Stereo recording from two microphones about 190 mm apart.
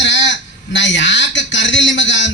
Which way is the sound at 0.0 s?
70° left (ahead or behind).